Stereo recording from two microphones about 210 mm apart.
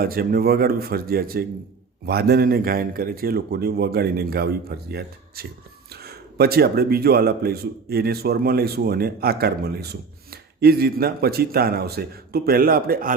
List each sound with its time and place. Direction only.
0.0 s speech: 45° right (ahead or behind)